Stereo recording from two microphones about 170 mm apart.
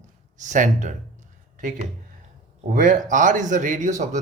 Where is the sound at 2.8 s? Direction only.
50° right (ahead or behind).